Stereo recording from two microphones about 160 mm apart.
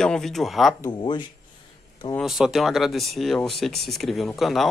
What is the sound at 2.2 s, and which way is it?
Speech, centre (ahead or behind).